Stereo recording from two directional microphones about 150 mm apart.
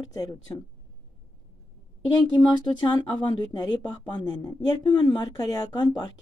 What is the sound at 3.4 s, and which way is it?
A woman's voice, 25° left (ahead or behind).